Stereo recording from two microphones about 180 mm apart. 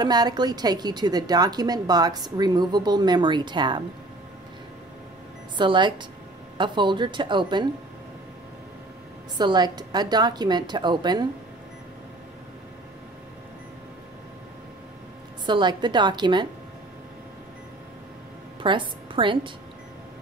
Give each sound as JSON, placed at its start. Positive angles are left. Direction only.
{"t": 0.0, "sound": "a woman's voice", "side_deg": -20}
{"t": 5.6, "sound": "a woman's voice", "side_deg": -25}
{"t": 9.4, "sound": "a woman's voice", "side_deg": -25}
{"t": 15.4, "sound": "a woman's voice", "side_deg": -25}
{"t": 18.6, "sound": "a woman's voice", "side_deg": -25}